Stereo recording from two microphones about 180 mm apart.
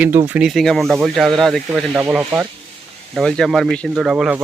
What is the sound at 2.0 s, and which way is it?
Speech, 10° right (ahead or behind).